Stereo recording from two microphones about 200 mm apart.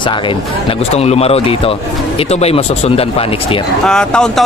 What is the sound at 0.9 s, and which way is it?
Speech, 30° left (ahead or behind).